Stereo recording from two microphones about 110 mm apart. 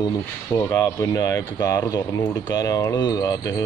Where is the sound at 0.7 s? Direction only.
30° left (ahead or behind).